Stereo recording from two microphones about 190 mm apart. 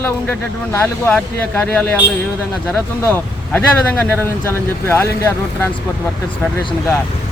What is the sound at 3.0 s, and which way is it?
Speech, 10° left (ahead or behind).